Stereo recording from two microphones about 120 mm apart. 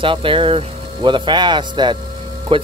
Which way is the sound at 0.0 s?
45° right (ahead or behind).